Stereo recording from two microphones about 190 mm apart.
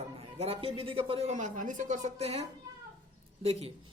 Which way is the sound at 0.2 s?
30° right (ahead or behind).